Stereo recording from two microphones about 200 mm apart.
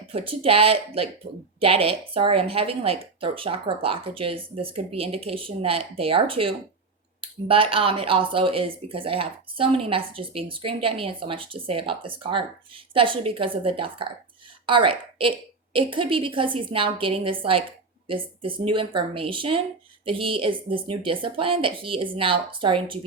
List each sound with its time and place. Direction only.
0.1 s speech: 30° right (ahead or behind)